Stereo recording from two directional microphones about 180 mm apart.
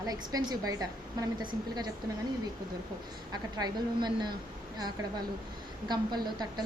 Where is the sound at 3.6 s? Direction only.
25° right (ahead or behind).